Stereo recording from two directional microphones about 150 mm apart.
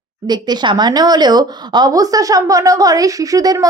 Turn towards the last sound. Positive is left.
turn(degrees=-25)  # may be behind; listen again after turning